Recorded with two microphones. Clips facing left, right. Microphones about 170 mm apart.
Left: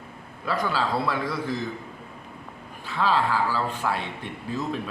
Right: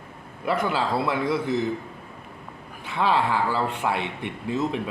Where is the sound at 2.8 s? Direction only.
20° right (ahead or behind).